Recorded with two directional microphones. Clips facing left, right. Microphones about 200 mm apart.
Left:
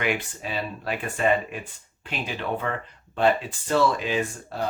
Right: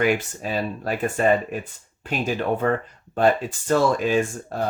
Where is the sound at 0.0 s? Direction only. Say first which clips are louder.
Right 6 dB; 40° right (ahead or behind).